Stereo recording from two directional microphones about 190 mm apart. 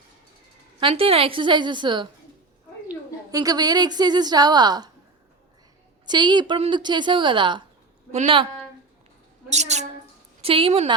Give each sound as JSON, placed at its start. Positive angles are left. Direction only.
{"t": 0.8, "sound": "a woman's voice", "side_deg": -30}
{"t": 3.3, "sound": "a woman's voice", "side_deg": -20}
{"t": 6.1, "sound": "a woman's voice", "side_deg": -25}
{"t": 9.5, "sound": "a woman's voice", "side_deg": -35}